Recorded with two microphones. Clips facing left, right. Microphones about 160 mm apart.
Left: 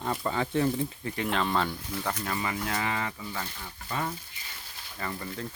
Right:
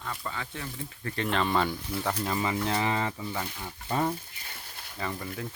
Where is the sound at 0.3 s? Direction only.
35° left (ahead or behind).